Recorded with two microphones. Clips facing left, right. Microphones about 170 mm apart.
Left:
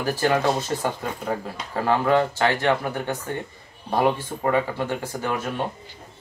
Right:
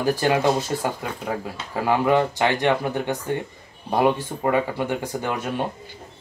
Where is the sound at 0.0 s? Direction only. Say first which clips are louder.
Right 2 dB; 15° right (ahead or behind).